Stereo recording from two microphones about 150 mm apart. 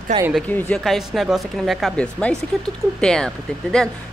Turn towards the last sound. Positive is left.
turn(degrees=5)  # may be behind; listen again after turning